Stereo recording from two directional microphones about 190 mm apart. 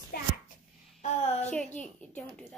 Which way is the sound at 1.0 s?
35° left (ahead or behind).